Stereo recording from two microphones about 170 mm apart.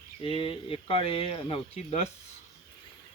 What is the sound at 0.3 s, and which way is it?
Speech, 30° left (ahead or behind).